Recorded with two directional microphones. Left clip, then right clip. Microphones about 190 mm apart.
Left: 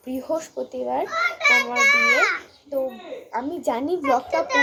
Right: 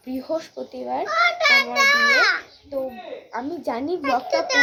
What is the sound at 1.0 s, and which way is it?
A child's voice, 60° right (ahead or behind).